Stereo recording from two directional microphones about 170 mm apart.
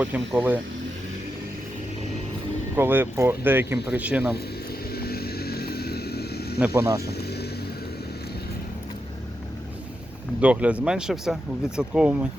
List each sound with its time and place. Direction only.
0.0 s speech: 10° right (ahead or behind)
2.7 s speech: 10° right (ahead or behind)
4.9 s vehicle: 65° left (ahead or behind)
6.7 s speech: 15° right (ahead or behind)
7.0 s vehicle: 70° left (ahead or behind)
10.4 s speech: 10° right (ahead or behind)